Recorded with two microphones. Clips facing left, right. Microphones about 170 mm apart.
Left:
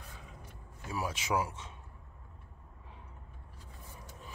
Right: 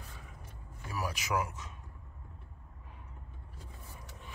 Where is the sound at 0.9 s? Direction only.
25° left (ahead or behind).